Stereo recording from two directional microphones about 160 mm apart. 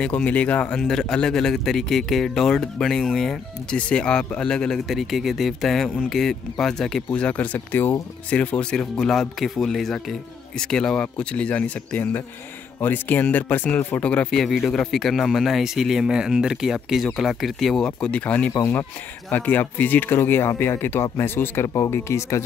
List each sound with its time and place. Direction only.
0.0 s a man's voice: 10° left (ahead or behind)